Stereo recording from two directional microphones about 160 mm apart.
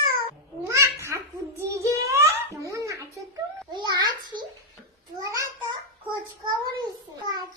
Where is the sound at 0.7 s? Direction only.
15° right (ahead or behind).